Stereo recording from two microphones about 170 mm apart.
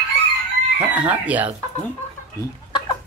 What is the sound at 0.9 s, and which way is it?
Speech, 10° right (ahead or behind).